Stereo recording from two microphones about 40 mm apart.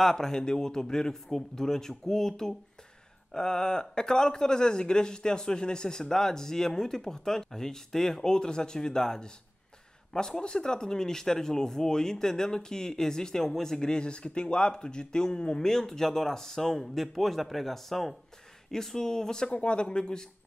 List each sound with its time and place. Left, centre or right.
0.0 s speech: centre
19.5 s speech: left